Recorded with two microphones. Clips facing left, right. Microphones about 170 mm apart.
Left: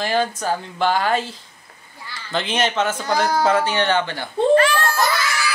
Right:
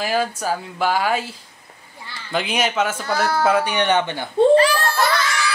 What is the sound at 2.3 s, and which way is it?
Speech, 10° right (ahead or behind).